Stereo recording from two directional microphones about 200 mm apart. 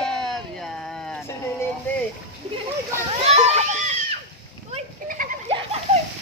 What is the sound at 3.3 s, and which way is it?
Splash, 30° right (ahead or behind).